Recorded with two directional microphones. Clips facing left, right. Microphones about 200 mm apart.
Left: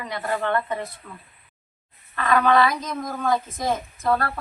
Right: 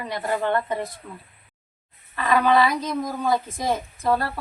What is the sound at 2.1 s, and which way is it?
A woman's voice, 5° right (ahead or behind).